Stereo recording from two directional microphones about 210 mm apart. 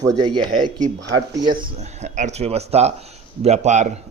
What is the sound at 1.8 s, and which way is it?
Speech, 30° right (ahead or behind).